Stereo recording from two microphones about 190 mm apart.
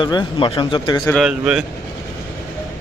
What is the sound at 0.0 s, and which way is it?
Speech, 25° left (ahead or behind).